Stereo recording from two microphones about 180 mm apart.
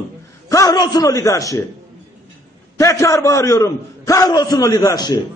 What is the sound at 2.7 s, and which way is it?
A man's voice, 15° left (ahead or behind).